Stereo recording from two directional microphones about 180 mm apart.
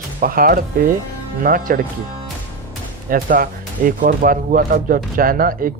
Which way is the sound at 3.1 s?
50° right (ahead or behind).